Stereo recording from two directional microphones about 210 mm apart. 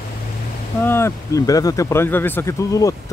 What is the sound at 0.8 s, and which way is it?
Speech, 10° left (ahead or behind).